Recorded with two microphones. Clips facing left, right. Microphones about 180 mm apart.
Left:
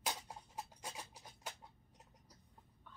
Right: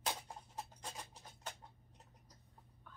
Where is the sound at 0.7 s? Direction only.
10° left (ahead or behind).